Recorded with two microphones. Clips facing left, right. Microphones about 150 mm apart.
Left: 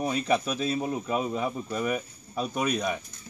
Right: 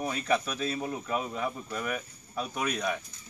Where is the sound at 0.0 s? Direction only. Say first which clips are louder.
Left 3 dB; 20° left (ahead or behind).